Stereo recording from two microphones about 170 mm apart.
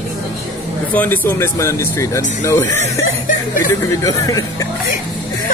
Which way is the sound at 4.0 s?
20° left (ahead or behind).